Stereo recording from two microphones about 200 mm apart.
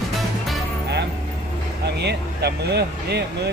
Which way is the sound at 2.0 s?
55° right (ahead or behind).